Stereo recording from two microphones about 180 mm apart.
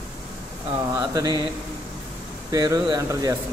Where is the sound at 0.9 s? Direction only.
20° right (ahead or behind).